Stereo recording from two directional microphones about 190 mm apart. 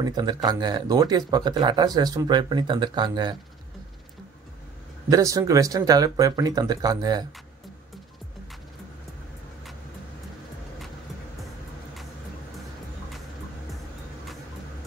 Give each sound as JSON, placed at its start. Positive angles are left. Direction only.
{"t": 0.0, "sound": "speech", "side_deg": -20}
{"t": 5.1, "sound": "speech", "side_deg": -15}